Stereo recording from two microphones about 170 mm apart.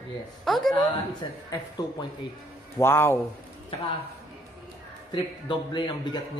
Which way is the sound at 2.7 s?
15° left (ahead or behind).